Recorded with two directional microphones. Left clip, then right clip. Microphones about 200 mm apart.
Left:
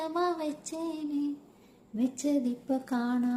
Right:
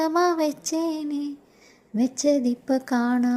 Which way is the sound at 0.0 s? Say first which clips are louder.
Right 9 dB; 45° right (ahead or behind).